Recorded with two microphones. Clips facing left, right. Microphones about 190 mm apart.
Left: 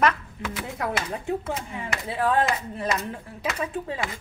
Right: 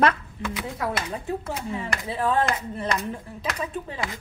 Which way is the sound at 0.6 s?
Centre (ahead or behind).